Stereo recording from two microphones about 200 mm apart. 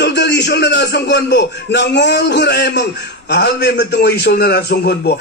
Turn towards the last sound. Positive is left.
turn(degrees=55)  # may be behind; listen again after turning